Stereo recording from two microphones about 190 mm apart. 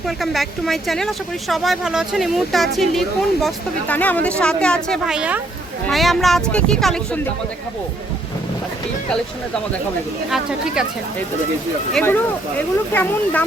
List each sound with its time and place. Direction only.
0.2 s speech: centre (ahead or behind)
10.2 s speech: centre (ahead or behind)
11.9 s speech: 10° left (ahead or behind)